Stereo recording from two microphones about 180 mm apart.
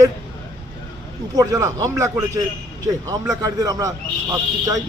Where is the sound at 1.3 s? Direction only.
20° right (ahead or behind).